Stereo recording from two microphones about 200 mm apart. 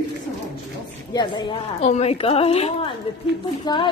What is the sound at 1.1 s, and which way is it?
A woman's voice, 20° left (ahead or behind).